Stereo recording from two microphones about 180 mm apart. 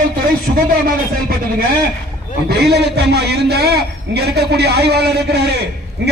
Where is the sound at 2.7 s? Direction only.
65° right (ahead or behind).